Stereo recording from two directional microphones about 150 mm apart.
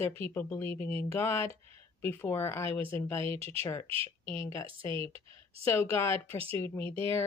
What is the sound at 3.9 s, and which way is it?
Speech, 35° right (ahead or behind).